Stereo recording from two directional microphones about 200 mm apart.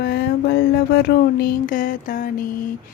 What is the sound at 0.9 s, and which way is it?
Mantra, 55° left (ahead or behind).